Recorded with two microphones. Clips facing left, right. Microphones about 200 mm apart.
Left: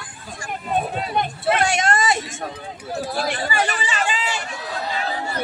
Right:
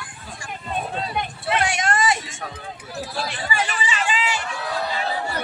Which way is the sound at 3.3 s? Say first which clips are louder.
Left 4 dB; 50° left (ahead or behind).